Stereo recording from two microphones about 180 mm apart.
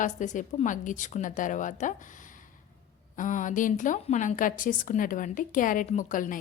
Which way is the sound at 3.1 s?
45° left (ahead or behind).